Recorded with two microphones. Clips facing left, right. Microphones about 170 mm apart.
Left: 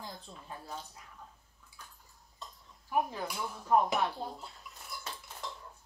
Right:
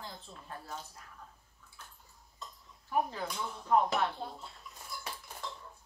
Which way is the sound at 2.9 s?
10° left (ahead or behind).